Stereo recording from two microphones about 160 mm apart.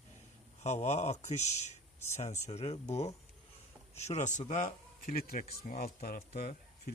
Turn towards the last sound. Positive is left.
turn(degrees=70)  # may be behind; listen again after turning